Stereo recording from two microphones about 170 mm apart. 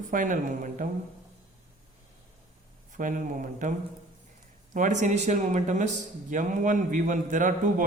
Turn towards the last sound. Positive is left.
turn(degrees=-50)  # may be behind; listen again after turning